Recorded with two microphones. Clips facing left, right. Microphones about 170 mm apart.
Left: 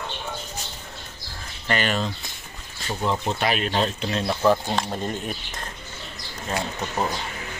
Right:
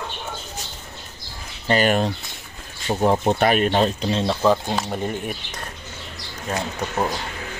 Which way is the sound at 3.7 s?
35° right (ahead or behind).